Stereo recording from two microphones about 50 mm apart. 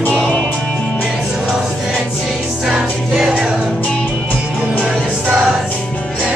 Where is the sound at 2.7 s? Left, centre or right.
Centre.